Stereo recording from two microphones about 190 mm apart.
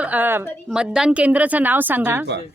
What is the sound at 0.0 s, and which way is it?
A woman's voice, 10° right (ahead or behind).